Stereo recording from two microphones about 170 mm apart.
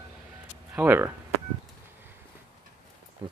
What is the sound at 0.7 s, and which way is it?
Speech, 10° right (ahead or behind).